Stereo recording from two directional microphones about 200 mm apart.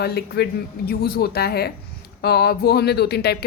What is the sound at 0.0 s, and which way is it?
Speech, 55° left (ahead or behind).